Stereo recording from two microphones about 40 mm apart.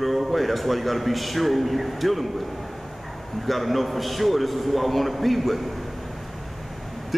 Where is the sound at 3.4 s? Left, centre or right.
Centre.